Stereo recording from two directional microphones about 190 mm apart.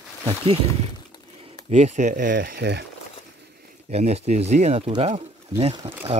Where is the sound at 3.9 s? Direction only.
35° right (ahead or behind).